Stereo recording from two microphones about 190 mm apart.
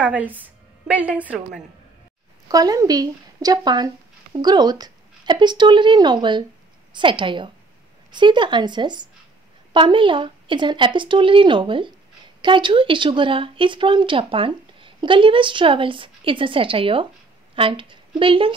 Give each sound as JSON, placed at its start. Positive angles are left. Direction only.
{"t": 0.0, "sound": "a woman's voice", "side_deg": -5}
{"t": 2.4, "sound": "a woman's voice", "side_deg": -20}